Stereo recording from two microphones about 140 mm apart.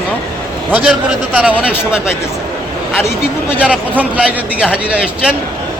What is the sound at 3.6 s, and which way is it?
A man's voice, 10° right (ahead or behind).